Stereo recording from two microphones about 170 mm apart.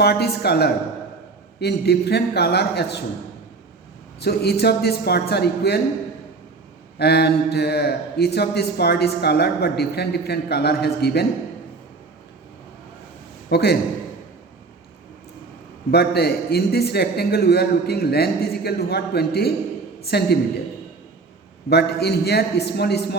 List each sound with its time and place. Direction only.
0.0 s speech: 70° left (ahead or behind)
4.2 s speech: 70° left (ahead or behind)
7.0 s speech: 70° left (ahead or behind)
13.5 s speech: 75° left (ahead or behind)
15.9 s speech: 70° left (ahead or behind)
21.7 s speech: 75° left (ahead or behind)